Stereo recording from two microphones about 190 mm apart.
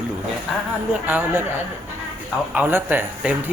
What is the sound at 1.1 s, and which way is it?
Speech, 10° right (ahead or behind).